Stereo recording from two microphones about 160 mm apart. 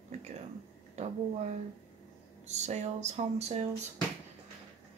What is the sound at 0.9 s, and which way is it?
Speech, 45° right (ahead or behind).